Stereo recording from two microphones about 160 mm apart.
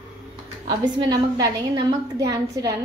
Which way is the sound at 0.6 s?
25° right (ahead or behind).